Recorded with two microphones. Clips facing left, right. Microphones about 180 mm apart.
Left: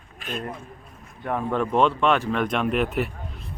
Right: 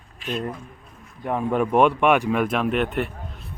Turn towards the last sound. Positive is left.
turn(degrees=0)  # may be behind; listen again after turning